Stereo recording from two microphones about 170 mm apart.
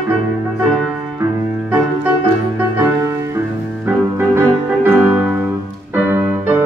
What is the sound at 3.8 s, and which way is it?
Music, 15° right (ahead or behind).